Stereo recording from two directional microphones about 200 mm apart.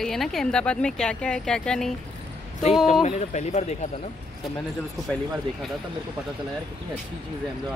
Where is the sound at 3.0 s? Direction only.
35° left (ahead or behind).